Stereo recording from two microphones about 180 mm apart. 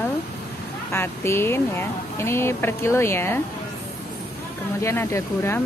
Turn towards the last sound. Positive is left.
turn(degrees=15)  # may be behind; listen again after turning